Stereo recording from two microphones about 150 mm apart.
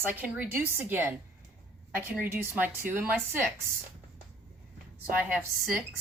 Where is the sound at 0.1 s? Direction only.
10° right (ahead or behind).